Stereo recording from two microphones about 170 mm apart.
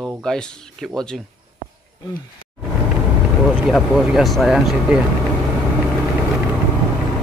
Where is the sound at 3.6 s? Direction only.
Centre (ahead or behind).